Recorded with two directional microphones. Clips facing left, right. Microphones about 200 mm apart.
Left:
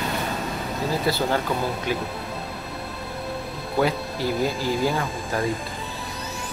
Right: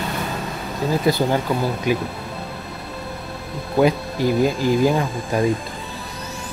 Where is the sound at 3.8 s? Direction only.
15° right (ahead or behind).